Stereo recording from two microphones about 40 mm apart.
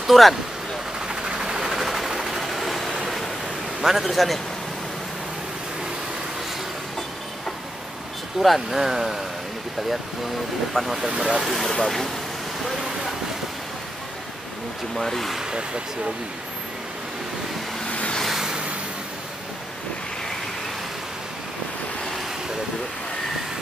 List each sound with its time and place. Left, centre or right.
0.0 s speech: centre
1.0 s vehicle: centre
3.8 s a man's voice: centre
8.4 s speech: centre
10.7 s a man's voice: centre
11.1 s speech: right
11.6 s speech: centre
15.0 s a man's voice: centre
17.8 s vehicle: left